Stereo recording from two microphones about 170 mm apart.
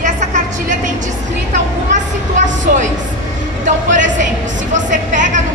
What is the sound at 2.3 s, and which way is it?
A woman's voice, 45° right (ahead or behind).